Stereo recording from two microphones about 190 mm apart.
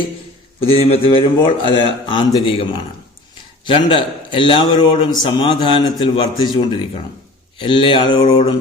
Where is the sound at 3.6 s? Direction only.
25° left (ahead or behind).